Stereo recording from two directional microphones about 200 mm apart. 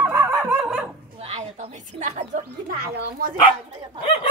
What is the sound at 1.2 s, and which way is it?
Speech, 30° right (ahead or behind).